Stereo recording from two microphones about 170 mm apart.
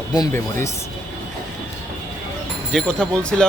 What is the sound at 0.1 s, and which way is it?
Speech, 20° left (ahead or behind).